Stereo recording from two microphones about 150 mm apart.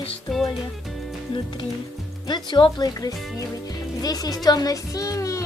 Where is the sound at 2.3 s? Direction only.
30° left (ahead or behind).